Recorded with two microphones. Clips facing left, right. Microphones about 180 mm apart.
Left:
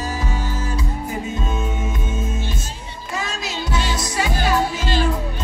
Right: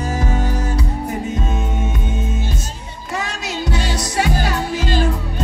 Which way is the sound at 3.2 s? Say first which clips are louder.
Right 3 dB; 65° right (ahead or behind).